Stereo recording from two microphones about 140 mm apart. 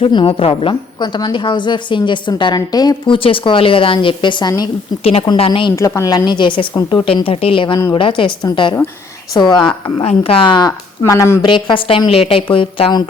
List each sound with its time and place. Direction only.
0.0 s a woman's voice: 40° left (ahead or behind)
5.0 s a woman's voice: 45° left (ahead or behind)
5.7 s a woman's voice: 20° left (ahead or behind)
10.0 s a woman's voice: 45° left (ahead or behind)
11.0 s a woman's voice: 20° left (ahead or behind)
11.4 s a woman's voice: 35° left (ahead or behind)